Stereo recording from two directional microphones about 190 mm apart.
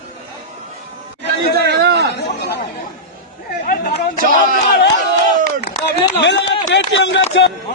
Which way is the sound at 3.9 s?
40° left (ahead or behind).